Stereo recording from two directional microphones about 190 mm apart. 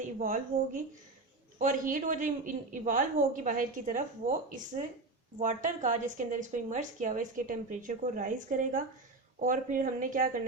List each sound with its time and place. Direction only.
0.0 s a woman's voice: 45° right (ahead or behind)